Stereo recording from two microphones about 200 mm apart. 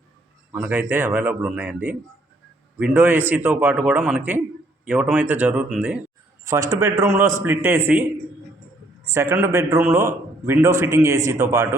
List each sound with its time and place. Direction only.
0.5 s a man's voice: 10° right (ahead or behind)
6.4 s a man's voice: 15° right (ahead or behind)
9.0 s a man's voice: 15° right (ahead or behind)